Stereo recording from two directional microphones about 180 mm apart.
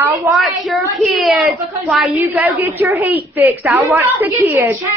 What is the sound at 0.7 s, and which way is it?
A woman's voice, centre (ahead or behind).